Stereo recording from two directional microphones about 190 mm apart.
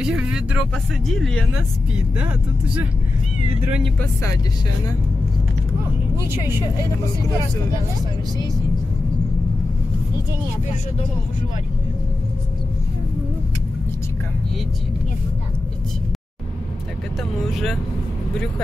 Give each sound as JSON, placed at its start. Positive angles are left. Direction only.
{"t": 0.0, "sound": "speech", "side_deg": -5}